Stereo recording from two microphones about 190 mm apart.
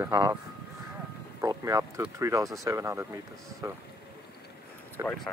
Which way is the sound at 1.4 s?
15° right (ahead or behind).